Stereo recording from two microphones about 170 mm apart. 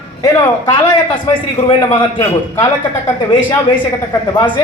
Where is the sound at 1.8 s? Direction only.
20° left (ahead or behind).